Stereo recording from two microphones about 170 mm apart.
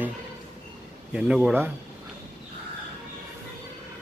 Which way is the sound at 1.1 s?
5° right (ahead or behind).